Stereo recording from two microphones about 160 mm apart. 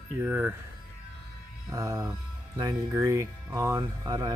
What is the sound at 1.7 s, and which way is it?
Speech, 20° right (ahead or behind).